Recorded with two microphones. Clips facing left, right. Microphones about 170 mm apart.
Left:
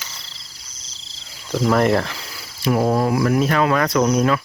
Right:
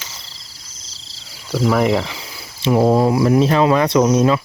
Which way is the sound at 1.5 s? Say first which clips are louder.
Right 1 dB; 5° right (ahead or behind).